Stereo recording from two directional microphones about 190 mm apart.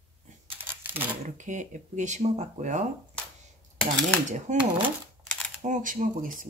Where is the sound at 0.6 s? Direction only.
10° right (ahead or behind).